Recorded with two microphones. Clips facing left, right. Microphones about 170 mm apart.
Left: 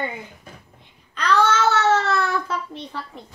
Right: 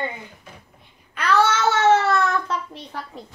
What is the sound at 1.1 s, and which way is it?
Babbling, 10° right (ahead or behind).